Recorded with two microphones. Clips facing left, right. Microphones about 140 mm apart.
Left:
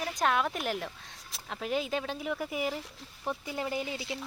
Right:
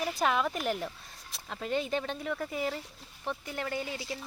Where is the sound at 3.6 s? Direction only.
20° left (ahead or behind).